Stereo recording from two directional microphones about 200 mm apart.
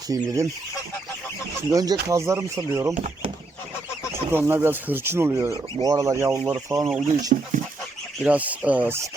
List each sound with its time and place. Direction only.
0.1 s speech: 15° right (ahead or behind)
1.7 s speech: 20° right (ahead or behind)
4.1 s speech: 10° right (ahead or behind)